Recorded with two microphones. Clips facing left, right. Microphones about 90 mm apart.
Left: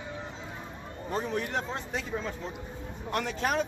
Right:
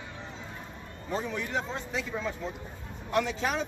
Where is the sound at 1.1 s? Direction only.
50° left (ahead or behind).